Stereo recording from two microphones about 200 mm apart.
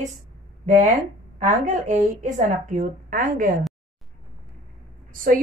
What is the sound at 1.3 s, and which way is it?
A woman's voice, 40° right (ahead or behind).